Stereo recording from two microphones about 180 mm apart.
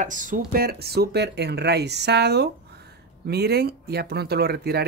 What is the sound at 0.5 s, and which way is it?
Speech, 60° right (ahead or behind).